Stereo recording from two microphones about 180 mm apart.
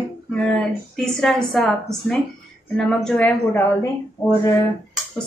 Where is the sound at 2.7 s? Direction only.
5° left (ahead or behind).